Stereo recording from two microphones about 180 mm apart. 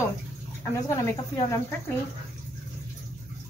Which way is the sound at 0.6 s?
15° left (ahead or behind).